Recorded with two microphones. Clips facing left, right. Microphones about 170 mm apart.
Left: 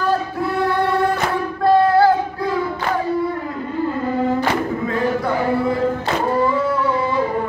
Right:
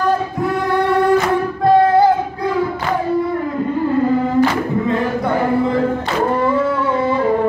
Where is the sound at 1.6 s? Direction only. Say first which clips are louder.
Right 1 dB; 20° right (ahead or behind).